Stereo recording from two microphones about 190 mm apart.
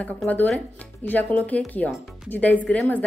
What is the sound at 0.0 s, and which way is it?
Speech, 5° left (ahead or behind).